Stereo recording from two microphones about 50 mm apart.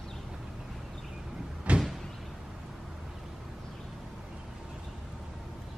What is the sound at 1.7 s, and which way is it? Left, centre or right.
Door, right.